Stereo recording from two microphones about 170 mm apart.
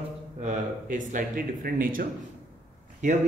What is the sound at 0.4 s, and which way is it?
A man's voice, 45° right (ahead or behind).